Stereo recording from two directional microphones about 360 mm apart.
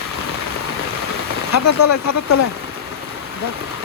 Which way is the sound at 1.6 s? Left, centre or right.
Left.